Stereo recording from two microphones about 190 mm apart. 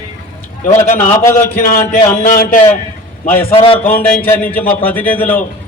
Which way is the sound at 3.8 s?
50° left (ahead or behind).